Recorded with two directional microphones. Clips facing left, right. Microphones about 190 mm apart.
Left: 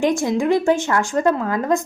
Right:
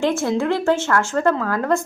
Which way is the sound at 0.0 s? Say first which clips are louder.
Left 1 dB; 15° left (ahead or behind).